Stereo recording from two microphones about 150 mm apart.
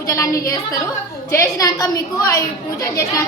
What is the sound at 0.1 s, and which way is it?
A woman's voice, 20° left (ahead or behind).